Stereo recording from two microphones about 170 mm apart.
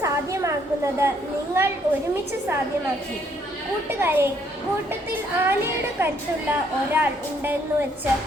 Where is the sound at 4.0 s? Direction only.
15° right (ahead or behind).